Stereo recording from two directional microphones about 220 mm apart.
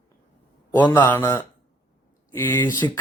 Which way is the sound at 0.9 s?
10° left (ahead or behind).